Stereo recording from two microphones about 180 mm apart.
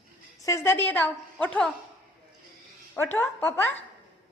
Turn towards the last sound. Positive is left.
turn(degrees=15)  # may be behind; listen again after turning